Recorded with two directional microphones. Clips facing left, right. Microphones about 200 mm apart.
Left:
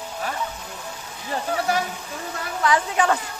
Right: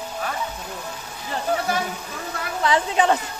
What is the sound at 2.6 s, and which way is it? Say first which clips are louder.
Speech: right 1 dB; 25° right (ahead or behind).